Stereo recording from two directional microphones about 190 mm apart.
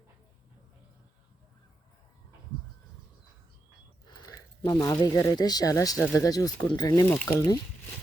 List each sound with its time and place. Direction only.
4.0 s speech: 20° left (ahead or behind)